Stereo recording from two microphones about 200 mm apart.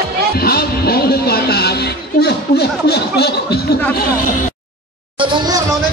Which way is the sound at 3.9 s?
45° left (ahead or behind).